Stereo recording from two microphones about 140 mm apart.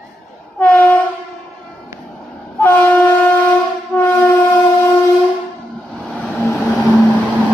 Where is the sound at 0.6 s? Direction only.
10° left (ahead or behind).